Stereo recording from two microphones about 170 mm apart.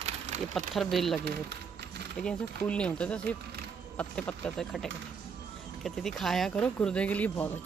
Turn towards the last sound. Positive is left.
turn(degrees=10)  # may be behind; listen again after turning